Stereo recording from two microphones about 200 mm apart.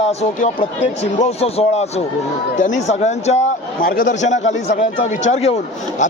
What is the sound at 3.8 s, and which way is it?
Speech, 45° left (ahead or behind).